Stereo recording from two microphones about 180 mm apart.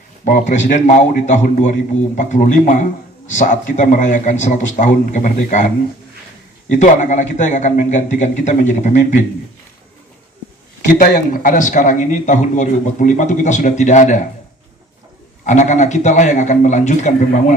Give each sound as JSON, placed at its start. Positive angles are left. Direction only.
{"t": 0.3, "sound": "a man's voice", "side_deg": 45}
{"t": 10.9, "sound": "a man's voice", "side_deg": 50}
{"t": 15.4, "sound": "a man's voice", "side_deg": 40}